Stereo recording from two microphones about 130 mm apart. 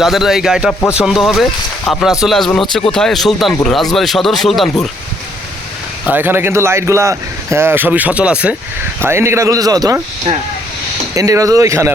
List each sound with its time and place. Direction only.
0.0 s speech: centre (ahead or behind)
0.7 s speech: 15° left (ahead or behind)
0.9 s speech: centre (ahead or behind)
6.1 s speech: 15° right (ahead or behind)
9.0 s speech: 20° right (ahead or behind)
11.1 s speech: 25° right (ahead or behind)